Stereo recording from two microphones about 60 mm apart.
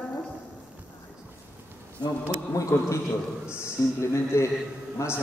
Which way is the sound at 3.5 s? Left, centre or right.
Left.